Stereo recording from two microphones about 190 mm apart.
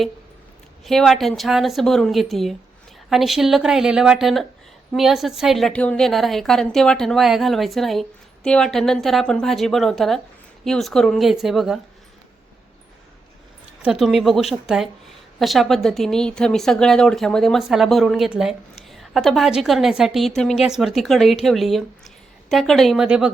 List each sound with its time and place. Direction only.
0.9 s speech: centre (ahead or behind)
13.8 s speech: centre (ahead or behind)